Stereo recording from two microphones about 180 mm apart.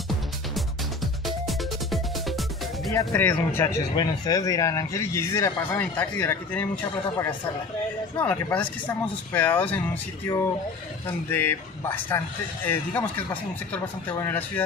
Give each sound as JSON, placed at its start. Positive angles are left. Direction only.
{"t": 1.2, "sound": "music", "side_deg": 0}
{"t": 2.9, "sound": "speech", "side_deg": 15}
{"t": 8.2, "sound": "speech", "side_deg": 10}
{"t": 11.2, "sound": "speech", "side_deg": 10}